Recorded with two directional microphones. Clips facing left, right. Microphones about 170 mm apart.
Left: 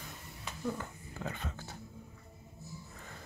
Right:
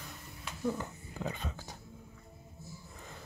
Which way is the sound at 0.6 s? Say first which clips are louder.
Right 3 dB; 10° right (ahead or behind).